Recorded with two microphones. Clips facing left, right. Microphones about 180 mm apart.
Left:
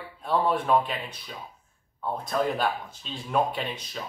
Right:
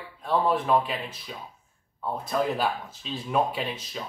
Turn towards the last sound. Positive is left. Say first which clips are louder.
# right 1 dB
turn(degrees=0)  # may be behind; listen again after turning